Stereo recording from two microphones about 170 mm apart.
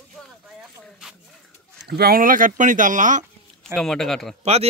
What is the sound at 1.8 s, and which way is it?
Speech, 70° right (ahead or behind).